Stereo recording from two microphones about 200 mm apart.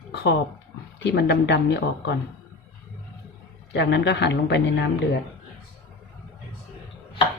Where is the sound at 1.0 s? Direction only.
60° left (ahead or behind).